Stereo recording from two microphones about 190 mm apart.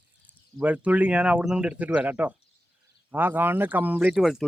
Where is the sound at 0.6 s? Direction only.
5° right (ahead or behind).